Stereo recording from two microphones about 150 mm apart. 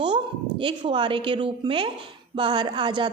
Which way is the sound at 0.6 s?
35° right (ahead or behind).